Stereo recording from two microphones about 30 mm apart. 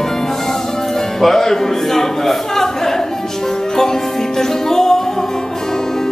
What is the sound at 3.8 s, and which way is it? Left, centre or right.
Music, centre.